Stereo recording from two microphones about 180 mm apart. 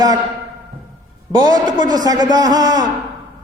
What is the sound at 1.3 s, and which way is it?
A man's voice, 20° right (ahead or behind).